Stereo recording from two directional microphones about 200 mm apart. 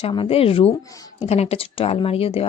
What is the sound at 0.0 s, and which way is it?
A woman's voice, 25° left (ahead or behind).